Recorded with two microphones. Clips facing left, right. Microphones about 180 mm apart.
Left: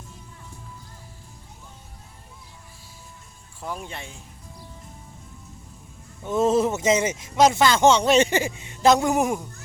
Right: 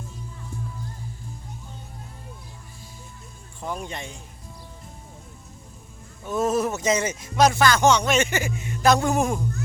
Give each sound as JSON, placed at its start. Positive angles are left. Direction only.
{"t": 3.6, "sound": "speech", "side_deg": 5}
{"t": 6.2, "sound": "speech", "side_deg": 25}